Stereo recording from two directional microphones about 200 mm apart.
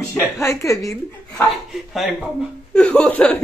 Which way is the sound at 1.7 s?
Centre (ahead or behind).